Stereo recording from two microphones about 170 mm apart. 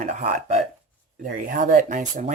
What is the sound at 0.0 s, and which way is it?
Speech, 45° right (ahead or behind).